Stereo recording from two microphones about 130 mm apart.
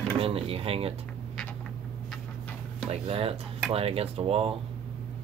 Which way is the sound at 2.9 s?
50° right (ahead or behind).